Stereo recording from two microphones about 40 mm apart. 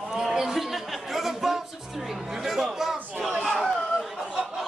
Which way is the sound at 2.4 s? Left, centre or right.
Centre.